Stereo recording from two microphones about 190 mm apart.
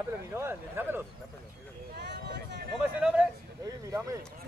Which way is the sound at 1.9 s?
65° right (ahead or behind).